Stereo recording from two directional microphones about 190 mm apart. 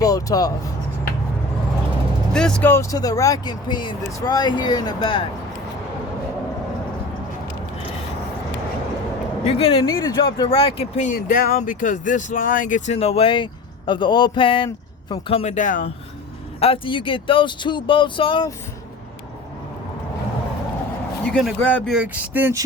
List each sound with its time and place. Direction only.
0.0 s speech: 20° left (ahead or behind)
2.3 s speech: 5° left (ahead or behind); by 5.2 s 25° left (ahead or behind)
9.4 s speech: 30° left (ahead or behind)
16.6 s speech: 30° left (ahead or behind)
21.2 s speech: 5° left (ahead or behind)
21.9 s speech: 5° right (ahead or behind)